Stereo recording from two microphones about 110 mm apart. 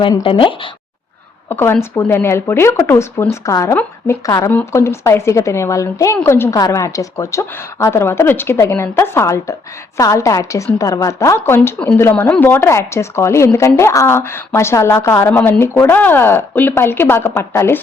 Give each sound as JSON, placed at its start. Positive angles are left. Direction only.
{"t": 0.2, "sound": "speech", "side_deg": 50}
{"t": 1.5, "sound": "a woman's voice", "side_deg": 20}